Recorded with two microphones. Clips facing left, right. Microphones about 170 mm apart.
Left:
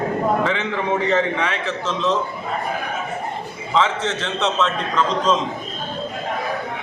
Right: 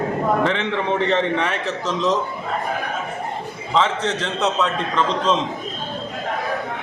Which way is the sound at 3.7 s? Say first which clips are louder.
Even; centre (ahead or behind).